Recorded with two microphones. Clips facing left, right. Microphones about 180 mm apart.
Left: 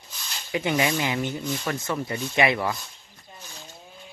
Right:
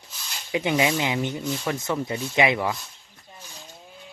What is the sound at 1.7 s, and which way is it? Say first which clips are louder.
Speech: right 3 dB; 15° right (ahead or behind).